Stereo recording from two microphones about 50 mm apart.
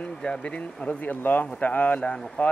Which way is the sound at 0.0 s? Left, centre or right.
Left.